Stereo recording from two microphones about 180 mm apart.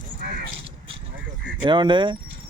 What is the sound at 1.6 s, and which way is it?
Speech, 25° right (ahead or behind).